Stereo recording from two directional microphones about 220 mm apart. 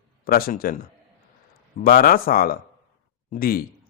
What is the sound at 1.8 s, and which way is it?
A man's voice, 45° left (ahead or behind).